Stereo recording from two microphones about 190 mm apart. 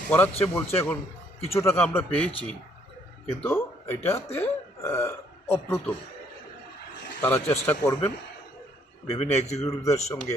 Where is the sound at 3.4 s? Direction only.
10° left (ahead or behind).